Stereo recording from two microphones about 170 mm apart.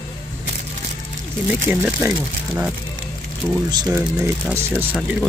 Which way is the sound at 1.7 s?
10° right (ahead or behind).